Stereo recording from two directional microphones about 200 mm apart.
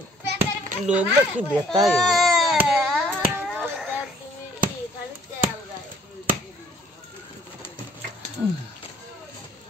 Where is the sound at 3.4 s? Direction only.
Centre (ahead or behind).